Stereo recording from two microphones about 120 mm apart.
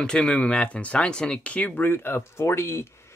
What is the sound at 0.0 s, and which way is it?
Speech, 5° left (ahead or behind).